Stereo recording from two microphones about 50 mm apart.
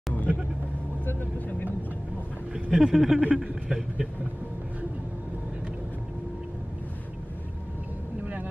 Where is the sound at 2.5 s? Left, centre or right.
Centre.